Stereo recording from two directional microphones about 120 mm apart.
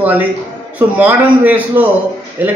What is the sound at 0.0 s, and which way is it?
A man's voice, 15° right (ahead or behind).